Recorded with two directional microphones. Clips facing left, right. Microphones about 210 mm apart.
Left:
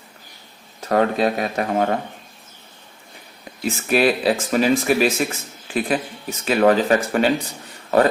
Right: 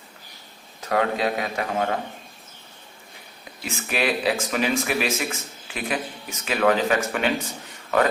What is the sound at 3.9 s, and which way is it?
Speech, 35° left (ahead or behind).